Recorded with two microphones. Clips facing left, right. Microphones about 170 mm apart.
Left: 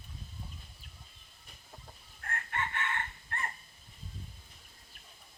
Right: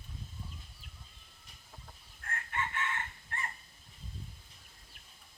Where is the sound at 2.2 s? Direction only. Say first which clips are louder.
Left 2 dB; 60° left (ahead or behind).